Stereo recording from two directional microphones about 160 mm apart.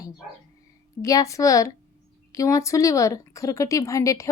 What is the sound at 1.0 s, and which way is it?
A woman's voice, 20° left (ahead or behind).